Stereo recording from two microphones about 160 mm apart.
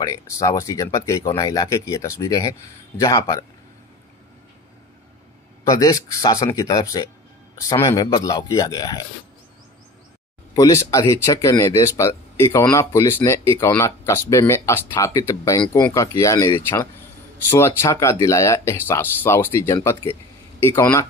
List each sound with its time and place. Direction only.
0.0 s speech: 20° left (ahead or behind)
5.6 s speech: 20° left (ahead or behind)
10.5 s speech: 20° left (ahead or behind)